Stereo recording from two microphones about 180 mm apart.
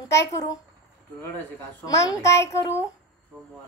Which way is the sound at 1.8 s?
20° left (ahead or behind).